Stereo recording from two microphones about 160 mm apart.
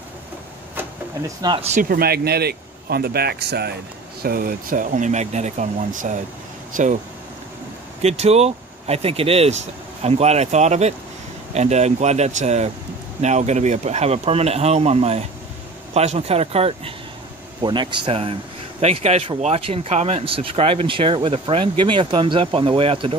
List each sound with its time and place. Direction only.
1.4 s speech: 30° right (ahead or behind)
1.7 s speech: 60° right (ahead or behind); by 3.7 s 90° right
4.2 s speech: 65° right (ahead or behind)
8.0 s speech: 40° right (ahead or behind)